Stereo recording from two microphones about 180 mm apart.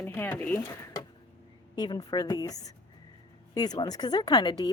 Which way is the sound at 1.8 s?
20° left (ahead or behind).